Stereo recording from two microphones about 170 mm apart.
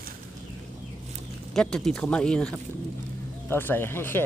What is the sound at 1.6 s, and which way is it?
Speech, 5° left (ahead or behind).